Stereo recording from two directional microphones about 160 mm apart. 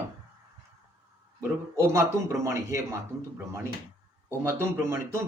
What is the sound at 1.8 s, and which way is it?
A man's voice, 15° right (ahead or behind).